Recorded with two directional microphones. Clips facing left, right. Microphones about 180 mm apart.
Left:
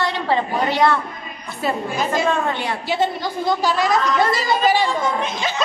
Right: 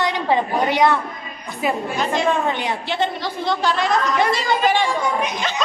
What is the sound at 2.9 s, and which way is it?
A woman's voice, 5° left (ahead or behind).